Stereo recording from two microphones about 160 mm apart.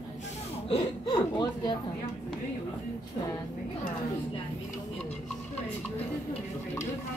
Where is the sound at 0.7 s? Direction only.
35° left (ahead or behind).